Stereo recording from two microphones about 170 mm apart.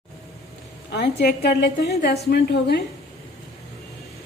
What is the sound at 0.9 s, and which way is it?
A woman's voice, 75° left (ahead or behind).